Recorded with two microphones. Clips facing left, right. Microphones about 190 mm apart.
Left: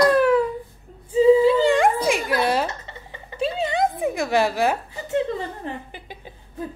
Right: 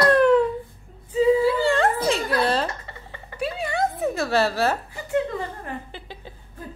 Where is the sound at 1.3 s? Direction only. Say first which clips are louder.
Left 5 dB; 20° left (ahead or behind).